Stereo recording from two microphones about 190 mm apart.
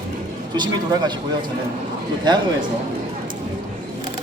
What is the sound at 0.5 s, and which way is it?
Speech, 25° right (ahead or behind).